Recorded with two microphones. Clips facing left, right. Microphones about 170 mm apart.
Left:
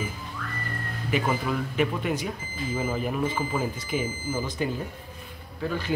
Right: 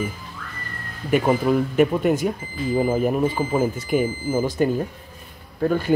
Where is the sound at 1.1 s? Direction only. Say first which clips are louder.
Right 8 dB; 45° right (ahead or behind).